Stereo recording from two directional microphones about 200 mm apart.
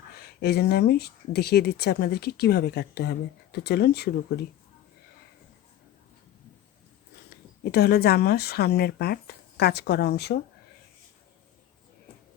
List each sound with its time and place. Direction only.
0.2 s speech: 55° left (ahead or behind)
7.6 s speech: 50° left (ahead or behind)